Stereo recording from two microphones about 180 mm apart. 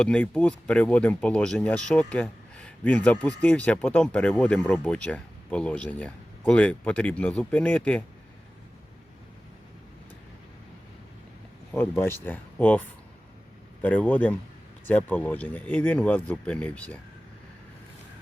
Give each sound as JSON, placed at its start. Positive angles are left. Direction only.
{"t": 0.0, "sound": "speech", "side_deg": 5}
{"t": 11.7, "sound": "speech", "side_deg": 10}
{"t": 13.8, "sound": "speech", "side_deg": 10}